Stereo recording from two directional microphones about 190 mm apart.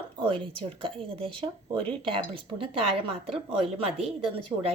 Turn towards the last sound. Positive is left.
turn(degrees=-30)  # may be behind; listen again after turning